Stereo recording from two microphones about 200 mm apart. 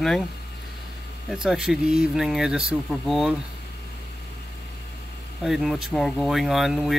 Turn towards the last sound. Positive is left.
turn(degrees=0)  # may be behind; listen again after turning